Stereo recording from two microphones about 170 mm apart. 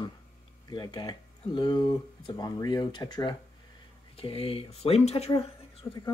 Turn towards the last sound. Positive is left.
turn(degrees=30)  # may be behind; listen again after turning